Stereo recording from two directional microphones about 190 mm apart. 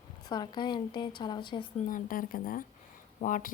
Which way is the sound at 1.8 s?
45° left (ahead or behind).